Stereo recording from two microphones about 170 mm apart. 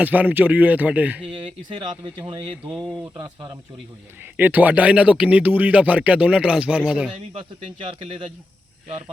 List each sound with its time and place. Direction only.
0.0 s speech: 10° right (ahead or behind)
1.8 s speech: 30° right (ahead or behind)
2.6 s speech: centre (ahead or behind)
3.2 s speech: 25° right (ahead or behind)
4.4 s speech: 10° right (ahead or behind)
7.1 s speech: 30° right (ahead or behind)